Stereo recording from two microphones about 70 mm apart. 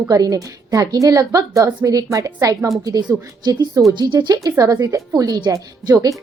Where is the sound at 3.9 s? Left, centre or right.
Right.